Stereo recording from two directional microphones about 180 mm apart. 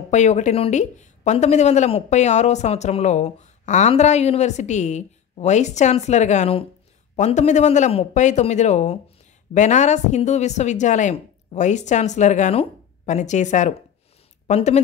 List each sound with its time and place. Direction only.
0.1 s a woman's voice: 40° left (ahead or behind)